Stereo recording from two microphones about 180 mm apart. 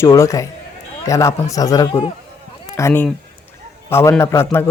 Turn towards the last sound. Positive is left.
turn(degrees=15)  # may be behind; listen again after turning